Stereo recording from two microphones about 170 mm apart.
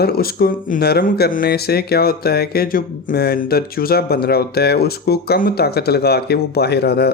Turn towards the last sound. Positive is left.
turn(degrees=70)  # may be behind; listen again after turning